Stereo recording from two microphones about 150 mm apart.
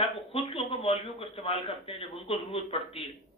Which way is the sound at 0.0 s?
40° left (ahead or behind).